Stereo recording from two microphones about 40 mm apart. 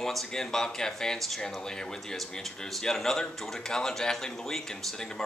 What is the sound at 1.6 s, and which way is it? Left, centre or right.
Speech, centre.